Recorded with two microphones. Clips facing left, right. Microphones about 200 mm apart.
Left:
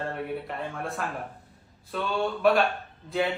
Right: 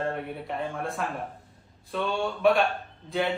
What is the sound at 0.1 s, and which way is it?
A man's voice, centre (ahead or behind).